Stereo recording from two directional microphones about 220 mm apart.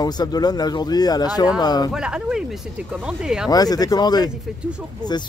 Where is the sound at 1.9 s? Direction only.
5° right (ahead or behind).